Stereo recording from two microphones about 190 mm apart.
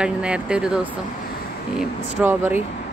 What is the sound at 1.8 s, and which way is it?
Speech, 10° right (ahead or behind).